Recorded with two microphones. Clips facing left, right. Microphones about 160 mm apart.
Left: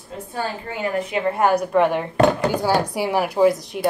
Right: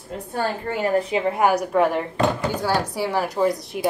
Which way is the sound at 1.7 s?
Centre (ahead or behind).